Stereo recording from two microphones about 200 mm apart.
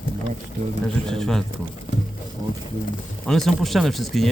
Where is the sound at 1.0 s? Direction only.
5° left (ahead or behind).